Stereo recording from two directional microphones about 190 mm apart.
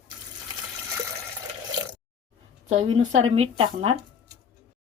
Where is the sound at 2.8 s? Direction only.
35° right (ahead or behind).